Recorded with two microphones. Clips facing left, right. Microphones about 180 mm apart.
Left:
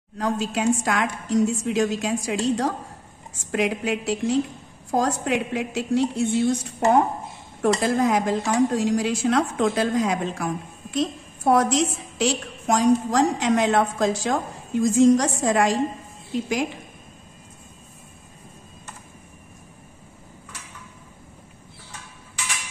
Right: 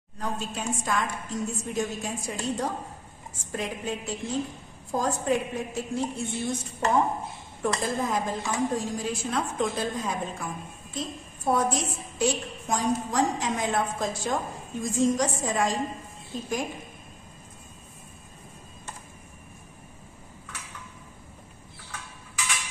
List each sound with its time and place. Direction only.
0.2 s a woman's voice: 90° left